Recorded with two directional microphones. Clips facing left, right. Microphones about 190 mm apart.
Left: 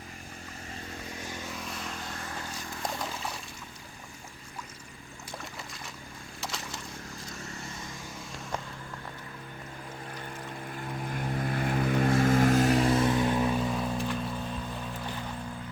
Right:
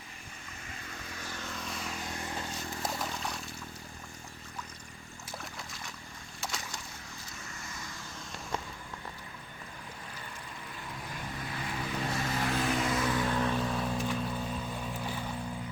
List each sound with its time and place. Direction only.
1.2 s vehicle: 15° left (ahead or behind)
2.0 s vehicle: 15° right (ahead or behind)
2.8 s a sound: centre (ahead or behind)
6.4 s boat: centre (ahead or behind)
11.1 s vehicle: 50° left (ahead or behind); by 15.4 s 5° right (ahead or behind)